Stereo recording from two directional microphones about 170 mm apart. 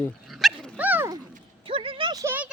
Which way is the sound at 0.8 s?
10° right (ahead or behind).